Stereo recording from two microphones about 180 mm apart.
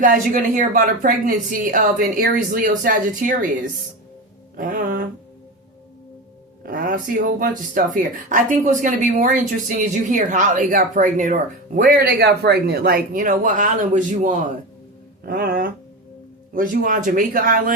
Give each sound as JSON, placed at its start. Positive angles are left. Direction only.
{"t": 0.0, "sound": "speech", "side_deg": -45}
{"t": 4.5, "sound": "speech", "side_deg": -50}
{"t": 6.6, "sound": "speech", "side_deg": -55}
{"t": 15.2, "sound": "speech", "side_deg": -60}
{"t": 16.6, "sound": "speech", "side_deg": -50}